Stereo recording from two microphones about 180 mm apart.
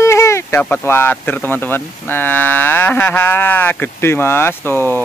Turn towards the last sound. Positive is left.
turn(degrees=10)  # may be behind; listen again after turning